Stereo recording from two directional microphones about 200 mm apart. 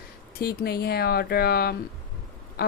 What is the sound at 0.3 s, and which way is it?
A woman's voice, 50° left (ahead or behind).